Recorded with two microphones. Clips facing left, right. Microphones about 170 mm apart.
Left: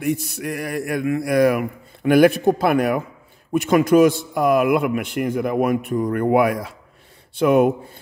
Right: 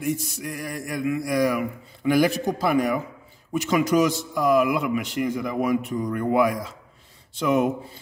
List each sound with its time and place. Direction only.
0.0 s a man's voice: 65° left (ahead or behind)